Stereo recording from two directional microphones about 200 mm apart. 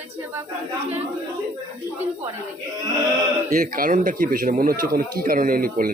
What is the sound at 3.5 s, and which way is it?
Speech, 40° right (ahead or behind).